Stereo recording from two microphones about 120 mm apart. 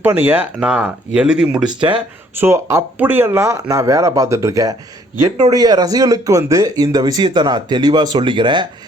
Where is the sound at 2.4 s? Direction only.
20° right (ahead or behind).